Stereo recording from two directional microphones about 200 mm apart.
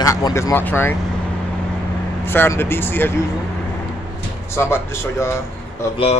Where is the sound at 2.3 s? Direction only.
10° left (ahead or behind).